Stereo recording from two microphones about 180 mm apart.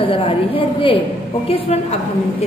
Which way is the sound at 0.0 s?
30° left (ahead or behind).